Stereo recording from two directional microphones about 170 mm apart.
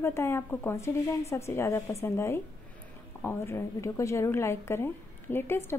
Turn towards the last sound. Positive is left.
turn(degrees=15)  # may be behind; listen again after turning